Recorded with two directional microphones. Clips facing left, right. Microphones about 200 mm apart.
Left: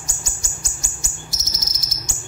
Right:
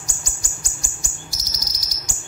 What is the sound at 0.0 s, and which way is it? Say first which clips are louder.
Bird: left 1 dB; 25° left (ahead or behind).